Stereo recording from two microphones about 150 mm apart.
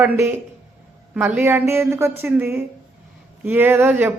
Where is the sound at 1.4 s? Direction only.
15° right (ahead or behind).